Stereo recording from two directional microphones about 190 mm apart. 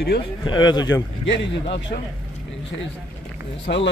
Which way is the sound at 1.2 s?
65° left (ahead or behind).